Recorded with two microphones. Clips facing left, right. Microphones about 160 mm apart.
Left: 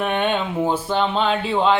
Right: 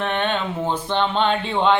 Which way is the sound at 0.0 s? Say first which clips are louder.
Left 2 dB; 10° left (ahead or behind).